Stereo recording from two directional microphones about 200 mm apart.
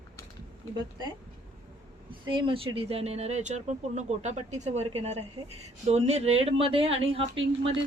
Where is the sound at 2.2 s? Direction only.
25° right (ahead or behind).